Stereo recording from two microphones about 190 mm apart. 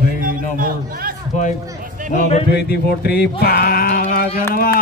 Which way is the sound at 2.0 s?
45° right (ahead or behind).